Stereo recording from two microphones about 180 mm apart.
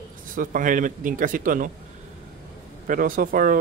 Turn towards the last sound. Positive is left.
turn(degrees=-50)  # may be behind; listen again after turning